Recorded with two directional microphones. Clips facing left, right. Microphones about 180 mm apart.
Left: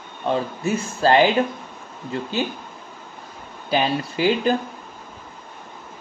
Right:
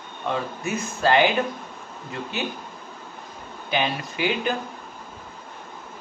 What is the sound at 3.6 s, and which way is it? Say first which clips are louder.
Speech: left 4 dB; 35° left (ahead or behind).